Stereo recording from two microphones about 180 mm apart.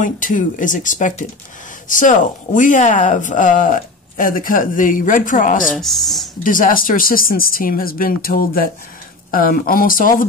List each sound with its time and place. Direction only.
0.0 s speech: 45° left (ahead or behind)
5.8 s speech: centre (ahead or behind)
6.4 s speech: 50° left (ahead or behind)